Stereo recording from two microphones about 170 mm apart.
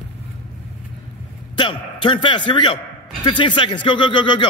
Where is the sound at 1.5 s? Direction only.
30° left (ahead or behind).